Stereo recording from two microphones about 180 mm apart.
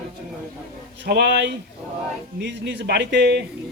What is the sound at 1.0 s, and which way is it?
Speech, 65° right (ahead or behind).